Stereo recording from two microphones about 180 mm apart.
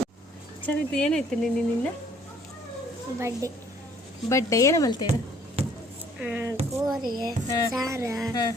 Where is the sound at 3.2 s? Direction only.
15° right (ahead or behind).